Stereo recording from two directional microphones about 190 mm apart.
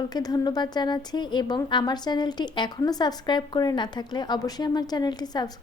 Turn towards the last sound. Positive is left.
turn(degrees=20)  # may be behind; listen again after turning